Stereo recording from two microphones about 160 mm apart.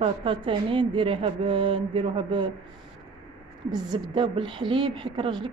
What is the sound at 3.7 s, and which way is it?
Speech, 25° right (ahead or behind).